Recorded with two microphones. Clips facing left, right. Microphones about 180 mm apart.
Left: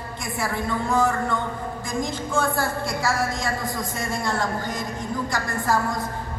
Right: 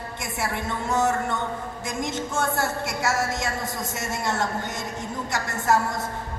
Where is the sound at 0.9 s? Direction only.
25° right (ahead or behind).